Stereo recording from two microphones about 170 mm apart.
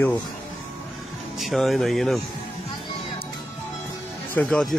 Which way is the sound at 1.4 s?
Centre (ahead or behind).